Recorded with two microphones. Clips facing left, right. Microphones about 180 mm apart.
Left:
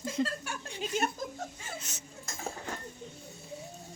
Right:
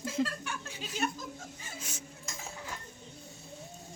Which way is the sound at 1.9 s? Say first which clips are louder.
Right 3 dB; 10° right (ahead or behind).